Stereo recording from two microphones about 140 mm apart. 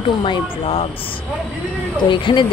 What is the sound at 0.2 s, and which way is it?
Speech, 40° left (ahead or behind).